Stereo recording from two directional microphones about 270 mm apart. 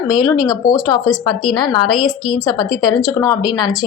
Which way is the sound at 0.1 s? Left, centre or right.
Centre.